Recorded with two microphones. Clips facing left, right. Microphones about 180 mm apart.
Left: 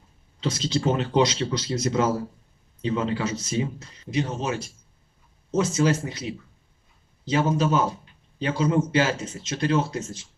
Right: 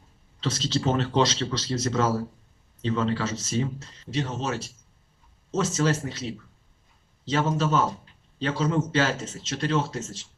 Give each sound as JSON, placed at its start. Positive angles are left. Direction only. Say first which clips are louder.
{"t": 0.3, "sound": "speech", "louder": "left 2 dB", "side_deg": 15}
{"t": 7.3, "sound": "speech", "louder": "left 2 dB", "side_deg": 15}